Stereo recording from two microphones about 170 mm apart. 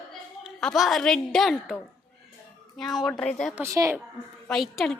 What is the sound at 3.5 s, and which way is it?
Speech, 15° right (ahead or behind).